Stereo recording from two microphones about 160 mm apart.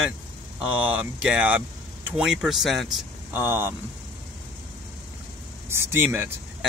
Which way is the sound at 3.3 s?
10° right (ahead or behind).